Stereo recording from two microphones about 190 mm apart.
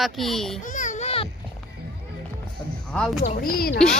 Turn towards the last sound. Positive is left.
turn(degrees=50)  # may be behind; listen again after turning